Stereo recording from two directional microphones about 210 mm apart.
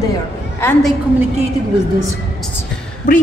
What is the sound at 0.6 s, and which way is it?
Speech, 10° left (ahead or behind).